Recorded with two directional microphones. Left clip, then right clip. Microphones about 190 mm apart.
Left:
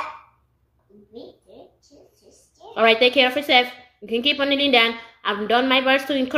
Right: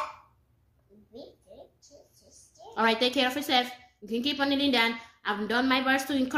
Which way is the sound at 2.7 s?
20° right (ahead or behind).